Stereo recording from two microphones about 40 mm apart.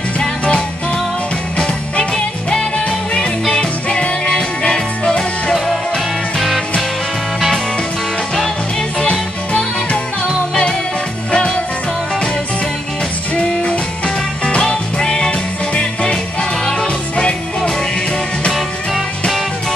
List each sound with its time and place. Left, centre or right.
1.6 s music: left
11.3 s music: left
13.3 s music: left